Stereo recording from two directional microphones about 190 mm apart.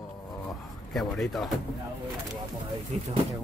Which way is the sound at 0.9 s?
Centre (ahead or behind).